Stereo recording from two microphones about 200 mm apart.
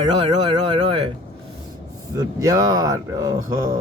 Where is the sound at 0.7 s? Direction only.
25° right (ahead or behind).